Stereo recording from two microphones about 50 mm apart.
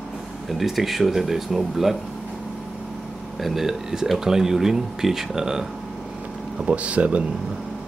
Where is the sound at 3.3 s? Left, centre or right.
Centre.